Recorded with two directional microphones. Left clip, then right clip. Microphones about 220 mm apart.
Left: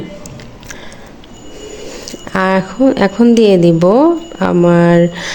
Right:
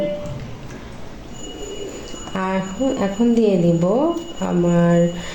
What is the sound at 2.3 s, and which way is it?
Speech, 40° left (ahead or behind).